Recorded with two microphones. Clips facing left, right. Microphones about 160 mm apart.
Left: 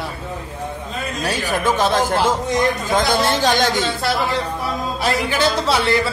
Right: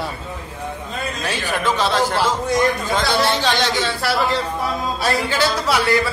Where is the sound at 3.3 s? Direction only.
45° left (ahead or behind).